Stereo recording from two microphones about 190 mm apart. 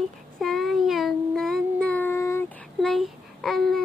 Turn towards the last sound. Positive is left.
turn(degrees=0)  # may be behind; listen again after turning